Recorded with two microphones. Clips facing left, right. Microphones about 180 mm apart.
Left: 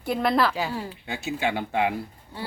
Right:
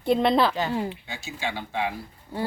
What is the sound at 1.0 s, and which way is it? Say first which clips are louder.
Speech: left 5 dB; 60° left (ahead or behind).